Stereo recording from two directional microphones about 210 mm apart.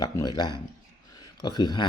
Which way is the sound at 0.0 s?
20° left (ahead or behind).